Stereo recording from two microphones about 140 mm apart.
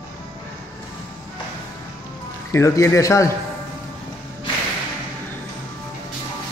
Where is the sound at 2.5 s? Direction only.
20° left (ahead or behind).